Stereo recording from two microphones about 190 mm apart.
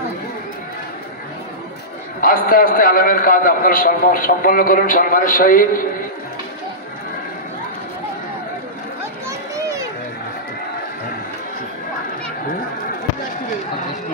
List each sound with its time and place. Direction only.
2.2 s a man's voice: 50° left (ahead or behind)